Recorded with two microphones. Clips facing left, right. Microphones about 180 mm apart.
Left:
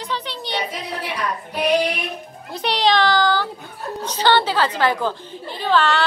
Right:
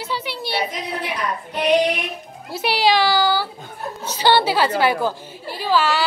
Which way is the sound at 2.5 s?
5° right (ahead or behind).